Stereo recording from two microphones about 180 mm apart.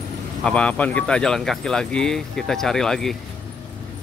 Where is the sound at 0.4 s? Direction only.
5° left (ahead or behind).